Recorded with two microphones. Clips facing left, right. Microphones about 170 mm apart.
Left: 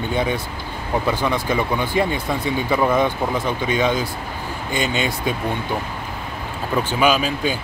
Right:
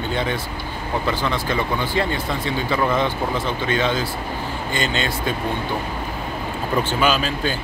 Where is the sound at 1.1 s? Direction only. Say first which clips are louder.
Left 2 dB; 15° left (ahead or behind).